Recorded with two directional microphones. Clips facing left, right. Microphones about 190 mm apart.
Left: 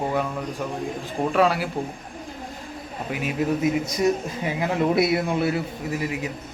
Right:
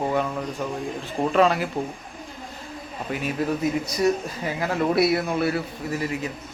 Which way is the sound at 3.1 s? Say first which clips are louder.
Left 1 dB; 15° left (ahead or behind).